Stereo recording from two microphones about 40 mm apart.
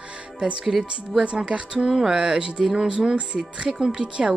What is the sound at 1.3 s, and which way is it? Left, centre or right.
Speech, right.